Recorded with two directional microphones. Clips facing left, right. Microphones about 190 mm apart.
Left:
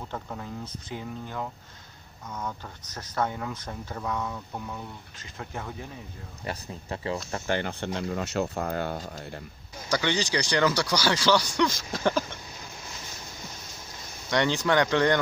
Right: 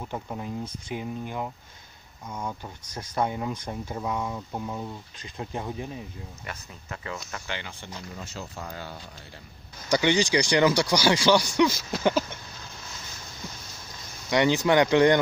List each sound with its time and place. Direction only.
0.0 s speech: 15° right (ahead or behind)
6.4 s speech: 30° left (ahead or behind)
7.4 s speech: 50° left (ahead or behind)
7.8 s speech: 75° left (ahead or behind); by 9.4 s 50° left (ahead or behind)
9.8 s speech: 15° right (ahead or behind)
14.3 s speech: 10° right (ahead or behind)